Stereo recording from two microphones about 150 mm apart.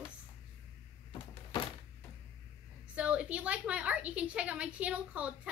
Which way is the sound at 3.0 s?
10° right (ahead or behind).